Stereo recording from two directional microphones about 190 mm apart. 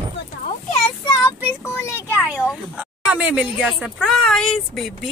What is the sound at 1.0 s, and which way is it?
Speech, 15° left (ahead or behind).